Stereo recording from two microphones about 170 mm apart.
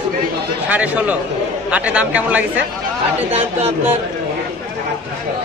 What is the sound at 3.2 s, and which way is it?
Speech, 40° right (ahead or behind).